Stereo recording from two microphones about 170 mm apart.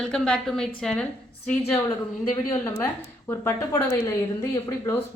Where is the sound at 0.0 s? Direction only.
5° left (ahead or behind).